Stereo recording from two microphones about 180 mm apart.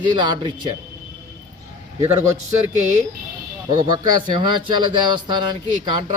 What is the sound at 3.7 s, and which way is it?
Speech, 25° right (ahead or behind).